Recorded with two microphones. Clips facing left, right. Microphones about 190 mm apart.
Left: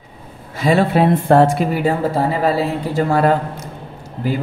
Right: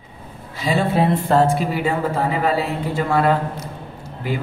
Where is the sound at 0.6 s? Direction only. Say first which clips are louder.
Left 4 dB; 60° left (ahead or behind).